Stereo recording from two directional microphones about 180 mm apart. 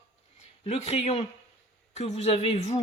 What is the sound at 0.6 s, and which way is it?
Speech, 35° left (ahead or behind).